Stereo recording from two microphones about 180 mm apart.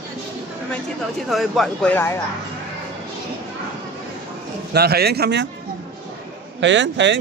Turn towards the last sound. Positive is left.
turn(degrees=-80)